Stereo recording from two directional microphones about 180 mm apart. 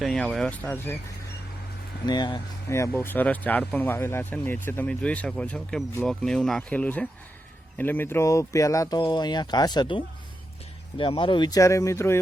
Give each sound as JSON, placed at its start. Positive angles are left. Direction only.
{"t": 0.0, "sound": "speech", "side_deg": 0}
{"t": 2.0, "sound": "speech", "side_deg": 25}